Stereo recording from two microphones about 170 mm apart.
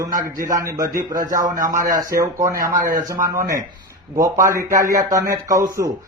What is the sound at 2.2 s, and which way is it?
Speech, 20° right (ahead or behind).